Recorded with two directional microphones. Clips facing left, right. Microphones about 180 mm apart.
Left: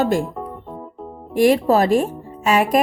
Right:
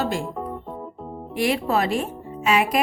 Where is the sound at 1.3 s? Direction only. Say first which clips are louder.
Left 7 dB; 45° left (ahead or behind).